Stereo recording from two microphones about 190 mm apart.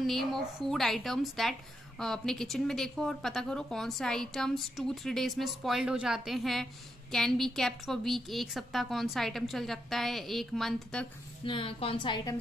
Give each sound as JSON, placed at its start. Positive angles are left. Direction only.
{"t": 0.0, "sound": "a woman's voice", "side_deg": 0}
{"t": 11.4, "sound": "a woman's voice", "side_deg": 30}